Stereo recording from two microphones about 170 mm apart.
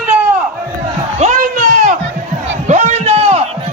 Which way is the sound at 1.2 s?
50° right (ahead or behind).